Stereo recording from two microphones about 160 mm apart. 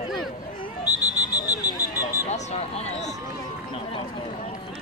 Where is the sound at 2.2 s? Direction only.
45° left (ahead or behind).